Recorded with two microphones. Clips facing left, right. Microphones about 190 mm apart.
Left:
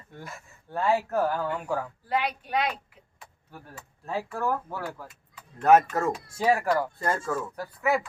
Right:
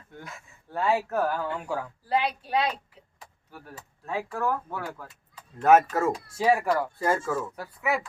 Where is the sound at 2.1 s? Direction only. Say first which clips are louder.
Right 2 dB; 30° right (ahead or behind).